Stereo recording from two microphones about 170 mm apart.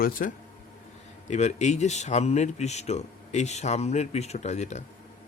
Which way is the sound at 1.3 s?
45° left (ahead or behind).